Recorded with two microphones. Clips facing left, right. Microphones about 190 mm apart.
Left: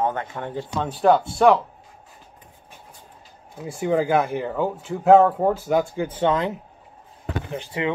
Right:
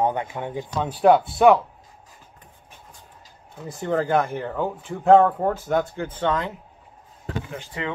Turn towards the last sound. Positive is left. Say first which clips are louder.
# left 5 dB
turn(degrees=20)  # may be behind; listen again after turning